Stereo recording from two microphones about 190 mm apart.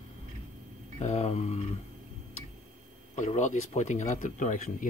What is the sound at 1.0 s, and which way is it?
Speech, 35° left (ahead or behind).